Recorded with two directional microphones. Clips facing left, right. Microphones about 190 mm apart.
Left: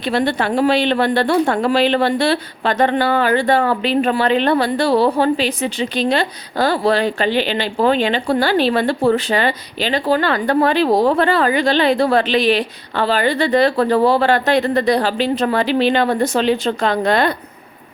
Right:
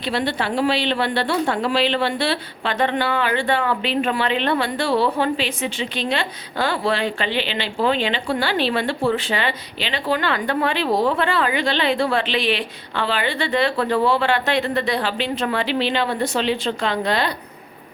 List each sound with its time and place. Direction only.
0.0 s a woman's voice: 50° left (ahead or behind)